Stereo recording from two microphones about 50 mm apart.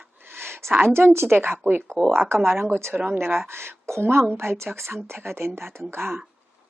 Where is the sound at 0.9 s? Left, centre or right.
Right.